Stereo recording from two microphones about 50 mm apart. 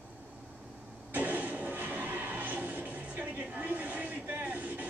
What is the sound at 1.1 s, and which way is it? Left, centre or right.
Music, right.